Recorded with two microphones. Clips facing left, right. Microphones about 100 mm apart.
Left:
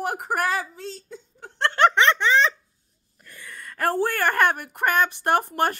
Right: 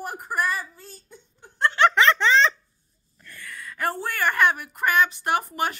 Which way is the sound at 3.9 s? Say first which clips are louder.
Left 4 dB; 60° left (ahead or behind).